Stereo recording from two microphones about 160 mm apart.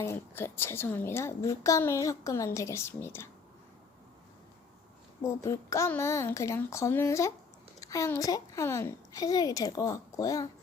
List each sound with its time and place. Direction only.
0.0 s a woman's voice: 15° left (ahead or behind)
5.2 s a woman's voice: 15° left (ahead or behind)